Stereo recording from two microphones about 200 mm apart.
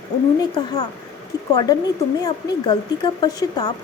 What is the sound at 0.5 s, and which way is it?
A woman's voice, 20° left (ahead or behind).